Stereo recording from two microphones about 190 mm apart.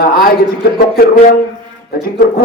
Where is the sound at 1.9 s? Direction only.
50° left (ahead or behind).